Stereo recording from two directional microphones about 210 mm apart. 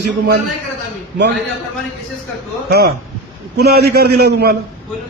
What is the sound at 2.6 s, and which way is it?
A man's voice, 50° right (ahead or behind).